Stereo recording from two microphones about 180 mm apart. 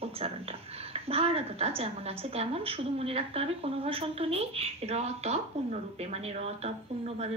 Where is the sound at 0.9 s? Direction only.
35° right (ahead or behind).